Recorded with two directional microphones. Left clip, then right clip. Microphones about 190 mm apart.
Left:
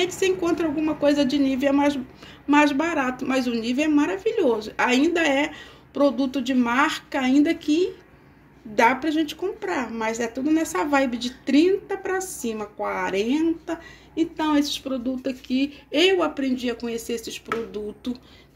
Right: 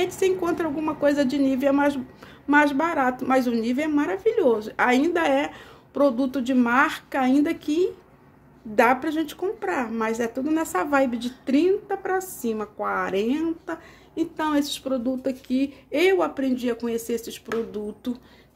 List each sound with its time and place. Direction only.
0.0 s speech: 15° right (ahead or behind)